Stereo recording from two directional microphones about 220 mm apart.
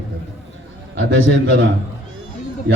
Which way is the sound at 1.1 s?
45° right (ahead or behind).